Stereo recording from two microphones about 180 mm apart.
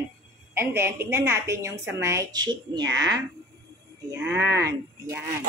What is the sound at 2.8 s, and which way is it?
Speech, 90° right.